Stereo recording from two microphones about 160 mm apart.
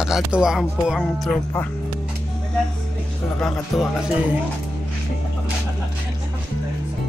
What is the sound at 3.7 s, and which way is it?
Speech, centre (ahead or behind).